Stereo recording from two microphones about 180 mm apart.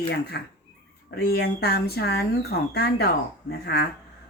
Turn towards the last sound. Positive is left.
turn(degrees=70)  # may be behind; listen again after turning